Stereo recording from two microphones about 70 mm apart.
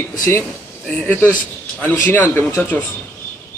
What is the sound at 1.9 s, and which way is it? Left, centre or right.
Speech, left.